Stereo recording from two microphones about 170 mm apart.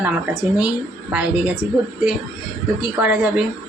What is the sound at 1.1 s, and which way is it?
Speech, 10° right (ahead or behind).